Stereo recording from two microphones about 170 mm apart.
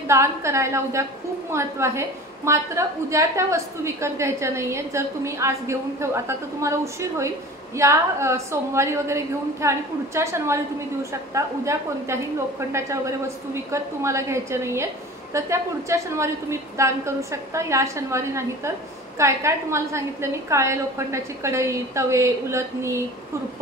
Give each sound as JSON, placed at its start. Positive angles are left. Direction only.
{"t": 0.1, "sound": "a woman's voice", "side_deg": -15}